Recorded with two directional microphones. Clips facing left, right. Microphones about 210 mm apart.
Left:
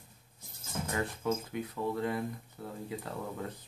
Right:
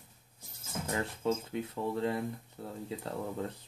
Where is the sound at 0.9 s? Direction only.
25° right (ahead or behind).